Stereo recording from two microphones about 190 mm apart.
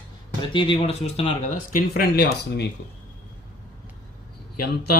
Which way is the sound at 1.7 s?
55° left (ahead or behind).